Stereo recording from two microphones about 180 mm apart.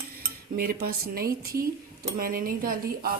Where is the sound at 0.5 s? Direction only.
55° right (ahead or behind).